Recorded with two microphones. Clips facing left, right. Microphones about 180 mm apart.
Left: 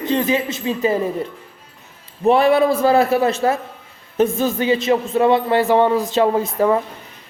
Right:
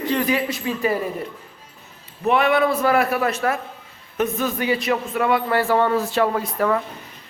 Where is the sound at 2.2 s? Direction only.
30° left (ahead or behind).